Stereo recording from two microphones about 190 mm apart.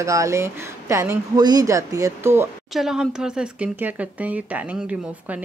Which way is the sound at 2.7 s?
Centre (ahead or behind).